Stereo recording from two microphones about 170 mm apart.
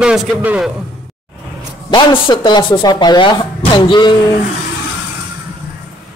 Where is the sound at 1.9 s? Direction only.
25° left (ahead or behind).